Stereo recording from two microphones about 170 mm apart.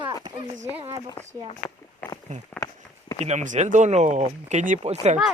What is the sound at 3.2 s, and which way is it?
Speech, 45° right (ahead or behind).